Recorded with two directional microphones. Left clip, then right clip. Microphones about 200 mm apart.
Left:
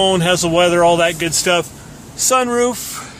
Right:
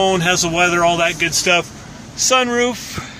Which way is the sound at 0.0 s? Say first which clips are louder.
Left 1 dB; 25° left (ahead or behind).